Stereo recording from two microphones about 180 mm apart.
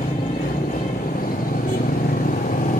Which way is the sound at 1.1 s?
50° left (ahead or behind).